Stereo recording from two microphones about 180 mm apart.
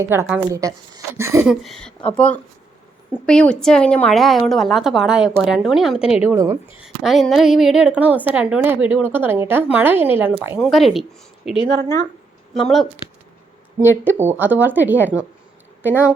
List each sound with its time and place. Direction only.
0.1 s a woman's voice: 10° right (ahead or behind)
1.5 s a woman's voice: centre (ahead or behind)
6.3 s a woman's voice: 15° right (ahead or behind)
6.7 s a woman's voice: 5° right (ahead or behind)
10.6 s a woman's voice: centre (ahead or behind)
14.0 s a woman's voice: 10° right (ahead or behind)